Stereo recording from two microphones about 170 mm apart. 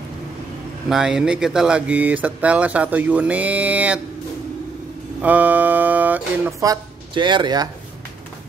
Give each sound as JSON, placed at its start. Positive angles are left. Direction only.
{"t": 0.8, "sound": "speech", "side_deg": -5}
{"t": 5.2, "sound": "speech", "side_deg": -10}
{"t": 6.6, "sound": "speech", "side_deg": -25}